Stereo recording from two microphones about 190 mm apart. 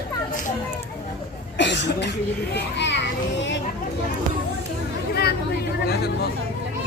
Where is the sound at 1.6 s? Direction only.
65° left (ahead or behind).